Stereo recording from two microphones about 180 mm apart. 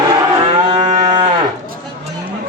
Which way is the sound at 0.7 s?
30° right (ahead or behind).